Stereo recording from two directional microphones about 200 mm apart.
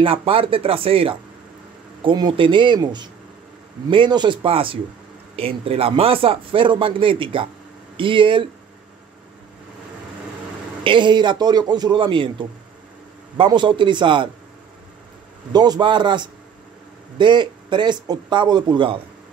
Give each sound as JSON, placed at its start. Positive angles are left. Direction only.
{"t": 0.0, "sound": "a man's voice", "side_deg": -30}
{"t": 10.8, "sound": "a man's voice", "side_deg": -25}
{"t": 15.5, "sound": "a man's voice", "side_deg": -20}